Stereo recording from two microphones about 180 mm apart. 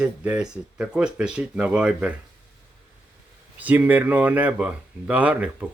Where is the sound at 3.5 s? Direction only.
10° right (ahead or behind).